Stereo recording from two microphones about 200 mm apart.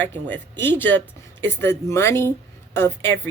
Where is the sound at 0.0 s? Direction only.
10° left (ahead or behind).